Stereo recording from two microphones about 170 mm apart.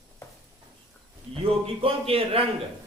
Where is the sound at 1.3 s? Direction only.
35° right (ahead or behind).